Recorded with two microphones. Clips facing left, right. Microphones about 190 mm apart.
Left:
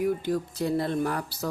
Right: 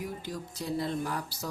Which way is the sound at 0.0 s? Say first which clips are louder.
Left 11 dB; 60° left (ahead or behind).